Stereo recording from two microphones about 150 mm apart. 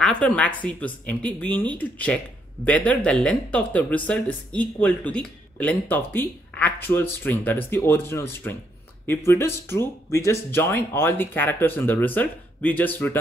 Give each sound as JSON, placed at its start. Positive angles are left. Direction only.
{"t": 0.0, "sound": "speech", "side_deg": 10}